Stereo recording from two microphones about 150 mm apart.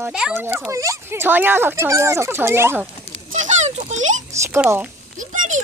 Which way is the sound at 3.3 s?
50° right (ahead or behind).